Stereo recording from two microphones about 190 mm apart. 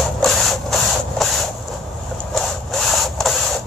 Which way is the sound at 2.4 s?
Centre (ahead or behind).